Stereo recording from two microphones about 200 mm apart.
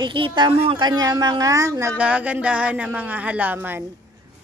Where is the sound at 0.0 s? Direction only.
25° right (ahead or behind).